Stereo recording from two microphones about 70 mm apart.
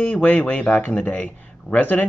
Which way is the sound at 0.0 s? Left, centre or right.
Left.